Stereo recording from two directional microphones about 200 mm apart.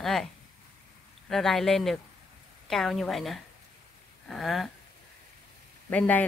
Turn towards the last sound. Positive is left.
turn(degrees=5)  # may be behind; listen again after turning